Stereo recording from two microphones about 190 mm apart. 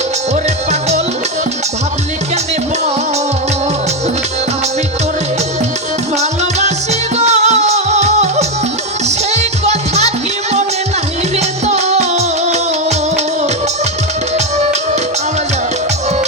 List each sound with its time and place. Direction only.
0.4 s music: 35° right (ahead or behind)
6.1 s music: 35° right (ahead or behind)
11.3 s music: 35° right (ahead or behind)